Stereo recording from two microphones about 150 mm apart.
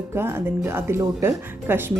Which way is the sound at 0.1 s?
15° right (ahead or behind).